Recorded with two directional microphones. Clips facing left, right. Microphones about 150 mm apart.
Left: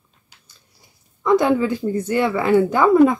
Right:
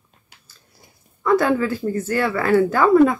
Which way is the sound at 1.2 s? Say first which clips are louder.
Left 1 dB; 20° left (ahead or behind).